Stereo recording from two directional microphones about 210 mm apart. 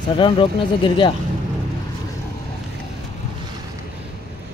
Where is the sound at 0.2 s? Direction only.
25° left (ahead or behind).